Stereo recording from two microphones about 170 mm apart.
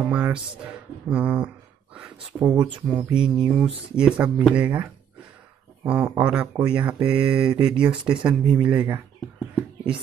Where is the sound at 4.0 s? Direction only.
10° right (ahead or behind).